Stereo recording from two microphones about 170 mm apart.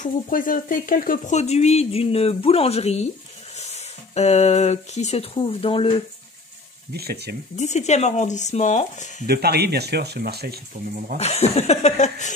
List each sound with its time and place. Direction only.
0.0 s speech: 55° left (ahead or behind); by 6.0 s 30° left (ahead or behind)
6.9 s speech: 70° right (ahead or behind)
7.5 s speech: 45° left (ahead or behind)
9.2 s speech: 70° right (ahead or behind)
11.1 s speech: 40° left (ahead or behind)